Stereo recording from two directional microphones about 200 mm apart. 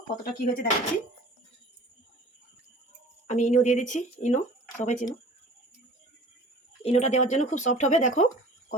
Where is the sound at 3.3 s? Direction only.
35° left (ahead or behind).